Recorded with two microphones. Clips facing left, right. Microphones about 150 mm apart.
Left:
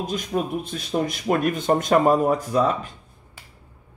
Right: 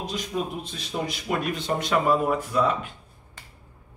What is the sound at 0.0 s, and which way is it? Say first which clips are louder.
Speech: left 4 dB; 50° left (ahead or behind).